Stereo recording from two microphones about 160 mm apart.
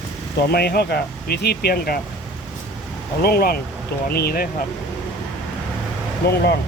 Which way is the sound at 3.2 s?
75° left (ahead or behind).